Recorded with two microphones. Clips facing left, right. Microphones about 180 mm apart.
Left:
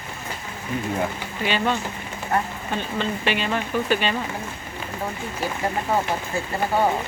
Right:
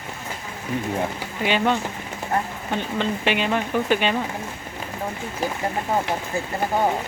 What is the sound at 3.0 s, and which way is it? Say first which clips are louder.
Speech: right 2 dB; 15° right (ahead or behind).